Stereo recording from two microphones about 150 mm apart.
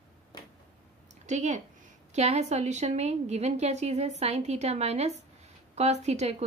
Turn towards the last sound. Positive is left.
turn(degrees=-45)  # may be behind; listen again after turning